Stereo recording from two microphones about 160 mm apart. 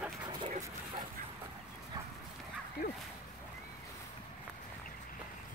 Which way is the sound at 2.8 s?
70° left (ahead or behind).